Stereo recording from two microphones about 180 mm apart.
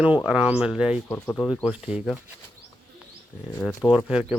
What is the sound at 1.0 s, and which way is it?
Speech, 10° left (ahead or behind).